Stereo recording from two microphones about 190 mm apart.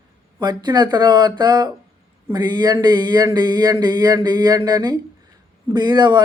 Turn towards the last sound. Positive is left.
turn(degrees=-25)  # may be behind; listen again after turning